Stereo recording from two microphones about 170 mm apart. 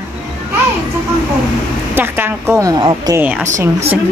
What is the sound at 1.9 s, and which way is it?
Speech, 10° right (ahead or behind).